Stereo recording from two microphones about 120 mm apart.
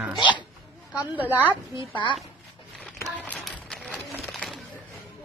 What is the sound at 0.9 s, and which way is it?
Speech, 15° right (ahead or behind).